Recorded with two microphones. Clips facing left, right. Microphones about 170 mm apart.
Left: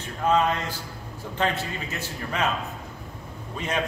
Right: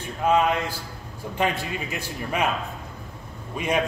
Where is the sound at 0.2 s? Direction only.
10° right (ahead or behind).